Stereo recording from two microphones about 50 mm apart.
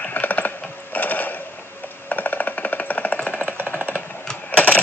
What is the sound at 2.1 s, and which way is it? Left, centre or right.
Music, left.